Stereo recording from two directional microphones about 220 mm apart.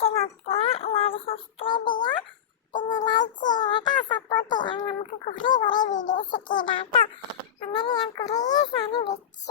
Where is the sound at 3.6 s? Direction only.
20° left (ahead or behind).